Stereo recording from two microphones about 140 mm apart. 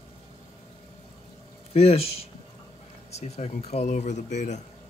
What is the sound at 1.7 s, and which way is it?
Speech, 45° left (ahead or behind).